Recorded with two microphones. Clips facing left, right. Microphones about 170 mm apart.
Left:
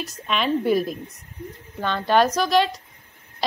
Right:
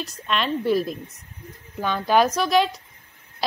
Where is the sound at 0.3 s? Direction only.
5° left (ahead or behind).